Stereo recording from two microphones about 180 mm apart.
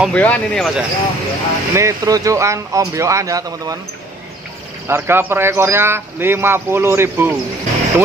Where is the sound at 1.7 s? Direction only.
15° right (ahead or behind).